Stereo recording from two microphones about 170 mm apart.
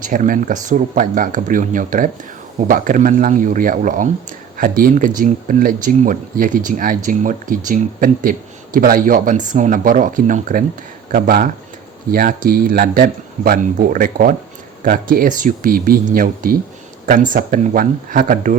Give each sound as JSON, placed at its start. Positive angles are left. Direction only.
{"t": 0.0, "sound": "speech", "side_deg": -50}